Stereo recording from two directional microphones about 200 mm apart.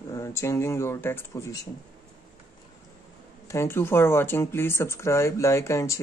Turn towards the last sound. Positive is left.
turn(degrees=15)  # may be behind; listen again after turning